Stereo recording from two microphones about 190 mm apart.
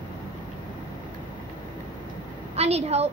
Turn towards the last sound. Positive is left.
turn(degrees=-35)  # may be behind; listen again after turning